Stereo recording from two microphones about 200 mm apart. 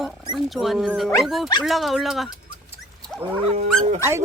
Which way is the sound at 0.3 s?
Centre (ahead or behind).